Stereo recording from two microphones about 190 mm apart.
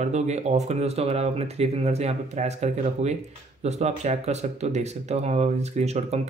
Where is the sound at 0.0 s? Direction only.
35° right (ahead or behind).